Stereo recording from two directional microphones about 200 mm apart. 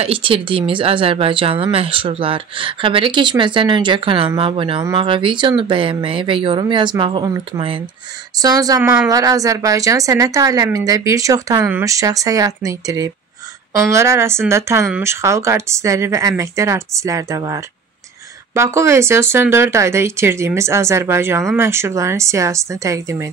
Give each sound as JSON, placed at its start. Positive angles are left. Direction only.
{"t": 0.0, "sound": "speech", "side_deg": -25}